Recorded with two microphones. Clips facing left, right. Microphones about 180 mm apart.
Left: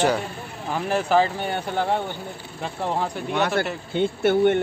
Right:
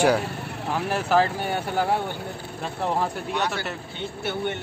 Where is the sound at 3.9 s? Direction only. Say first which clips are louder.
Left 13 dB; 55° left (ahead or behind).